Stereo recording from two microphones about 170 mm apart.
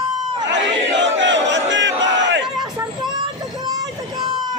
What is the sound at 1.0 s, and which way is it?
Battle cry, 90° right.